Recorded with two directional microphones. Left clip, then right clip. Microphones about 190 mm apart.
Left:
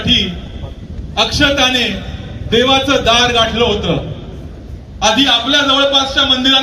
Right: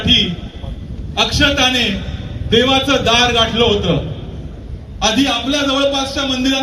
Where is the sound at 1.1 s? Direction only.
20° right (ahead or behind); by 3.9 s 40° right (ahead or behind).